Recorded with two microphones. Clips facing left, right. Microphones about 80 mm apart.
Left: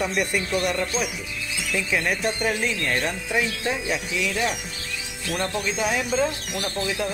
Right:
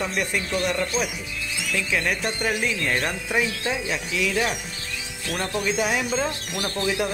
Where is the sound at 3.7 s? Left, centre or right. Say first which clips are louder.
Even; centre.